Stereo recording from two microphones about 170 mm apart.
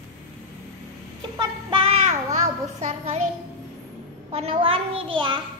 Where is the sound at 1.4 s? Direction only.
30° right (ahead or behind).